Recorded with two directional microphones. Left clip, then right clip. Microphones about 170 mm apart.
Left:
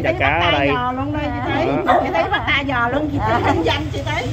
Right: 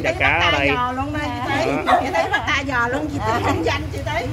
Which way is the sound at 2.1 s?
45° right (ahead or behind).